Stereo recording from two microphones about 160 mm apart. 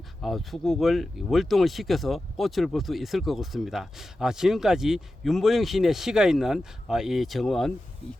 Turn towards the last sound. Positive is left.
turn(degrees=0)  # may be behind; listen again after turning